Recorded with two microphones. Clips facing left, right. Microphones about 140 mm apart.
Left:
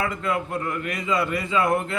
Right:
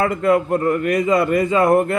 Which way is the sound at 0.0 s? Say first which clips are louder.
Right 9 dB; 50° right (ahead or behind).